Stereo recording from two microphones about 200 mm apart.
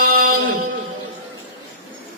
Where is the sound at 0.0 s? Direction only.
45° right (ahead or behind).